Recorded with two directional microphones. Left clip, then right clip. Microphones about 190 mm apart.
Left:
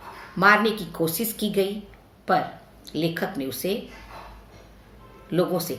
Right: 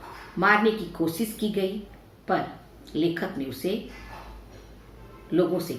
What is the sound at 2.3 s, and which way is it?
Speech, 50° left (ahead or behind).